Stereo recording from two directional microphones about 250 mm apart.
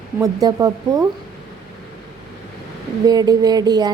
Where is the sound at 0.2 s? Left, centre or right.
Centre.